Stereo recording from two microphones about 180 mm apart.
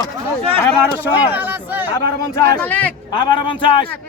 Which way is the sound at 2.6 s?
10° left (ahead or behind).